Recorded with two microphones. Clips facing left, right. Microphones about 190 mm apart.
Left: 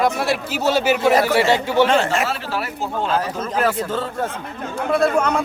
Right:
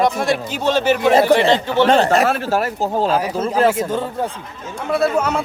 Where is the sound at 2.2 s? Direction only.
50° right (ahead or behind).